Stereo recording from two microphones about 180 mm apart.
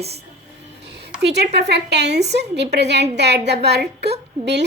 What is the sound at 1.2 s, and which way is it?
A woman's voice, 70° right (ahead or behind).